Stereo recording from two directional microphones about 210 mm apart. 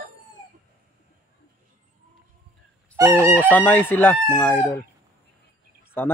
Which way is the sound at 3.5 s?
10° left (ahead or behind).